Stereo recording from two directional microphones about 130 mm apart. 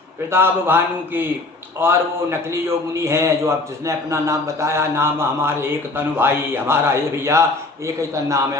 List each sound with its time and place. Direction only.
0.3 s a man's voice: 15° right (ahead or behind)